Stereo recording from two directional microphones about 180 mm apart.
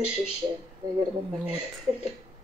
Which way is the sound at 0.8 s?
20° right (ahead or behind).